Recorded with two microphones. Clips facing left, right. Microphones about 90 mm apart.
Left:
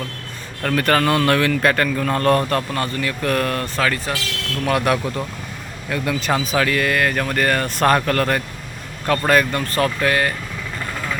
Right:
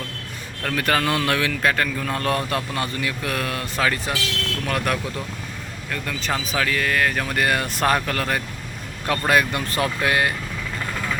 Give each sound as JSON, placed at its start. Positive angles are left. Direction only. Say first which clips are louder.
{"t": 0.6, "sound": "speech", "louder": "left 4 dB", "side_deg": 0}
{"t": 3.8, "sound": "speech", "louder": "right 1 dB", "side_deg": -20}
{"t": 4.6, "sound": "speech", "louder": "left 7 dB", "side_deg": 5}